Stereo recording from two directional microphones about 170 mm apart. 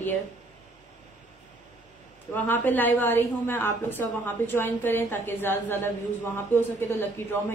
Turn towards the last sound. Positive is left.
turn(degrees=10)  # may be behind; listen again after turning